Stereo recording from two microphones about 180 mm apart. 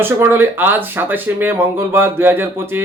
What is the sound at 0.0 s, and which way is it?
Speech, 10° right (ahead or behind).